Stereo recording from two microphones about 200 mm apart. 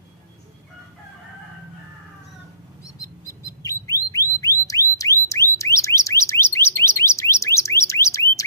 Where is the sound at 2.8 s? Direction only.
15° left (ahead or behind).